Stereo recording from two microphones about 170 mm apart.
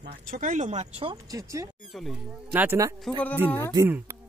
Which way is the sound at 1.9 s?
Centre (ahead or behind).